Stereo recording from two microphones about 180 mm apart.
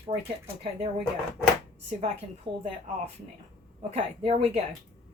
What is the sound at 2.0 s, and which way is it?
Speech, 35° right (ahead or behind).